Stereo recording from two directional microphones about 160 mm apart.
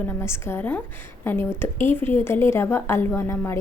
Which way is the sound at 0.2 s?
15° left (ahead or behind).